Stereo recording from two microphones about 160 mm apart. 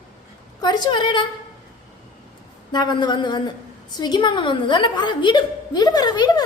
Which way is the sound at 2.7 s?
25° left (ahead or behind).